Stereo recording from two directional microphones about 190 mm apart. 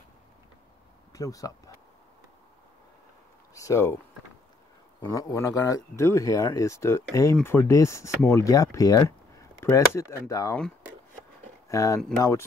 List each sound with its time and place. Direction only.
1.1 s speech: 15° left (ahead or behind)
3.5 s speech: 15° left (ahead or behind)
5.0 s speech: 15° left (ahead or behind)
11.7 s speech: 15° left (ahead or behind)